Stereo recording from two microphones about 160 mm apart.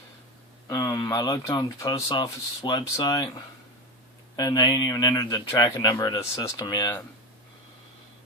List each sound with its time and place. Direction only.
0.7 s a man's voice: 25° left (ahead or behind)
4.4 s a man's voice: 25° left (ahead or behind)